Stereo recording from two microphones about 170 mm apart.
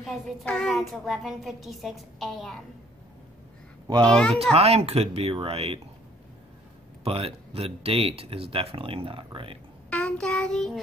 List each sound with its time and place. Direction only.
0.0 s a woman's voice: centre (ahead or behind)
4.0 s a woman's voice: 5° left (ahead or behind)
4.6 s speech: 35° right (ahead or behind)
7.1 s speech: 35° right (ahead or behind)
9.8 s child singing: 10° left (ahead or behind)